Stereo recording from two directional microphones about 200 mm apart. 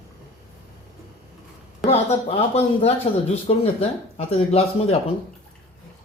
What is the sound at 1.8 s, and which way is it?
Speech, 35° left (ahead or behind).